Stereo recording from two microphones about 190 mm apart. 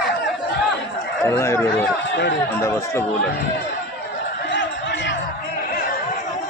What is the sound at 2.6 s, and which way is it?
Chatter, 15° left (ahead or behind).